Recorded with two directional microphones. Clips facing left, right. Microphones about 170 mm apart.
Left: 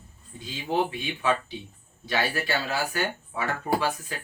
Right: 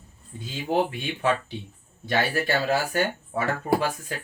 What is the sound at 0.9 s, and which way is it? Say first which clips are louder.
Speech: right 1 dB; 50° right (ahead or behind).